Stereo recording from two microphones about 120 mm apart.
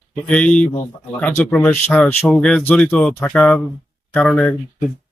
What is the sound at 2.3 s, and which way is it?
Speech, 5° left (ahead or behind).